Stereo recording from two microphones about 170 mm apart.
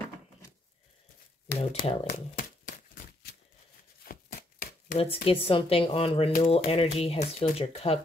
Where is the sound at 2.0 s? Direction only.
50° left (ahead or behind).